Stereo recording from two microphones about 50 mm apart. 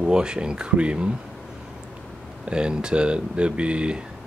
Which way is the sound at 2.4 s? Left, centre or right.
Centre.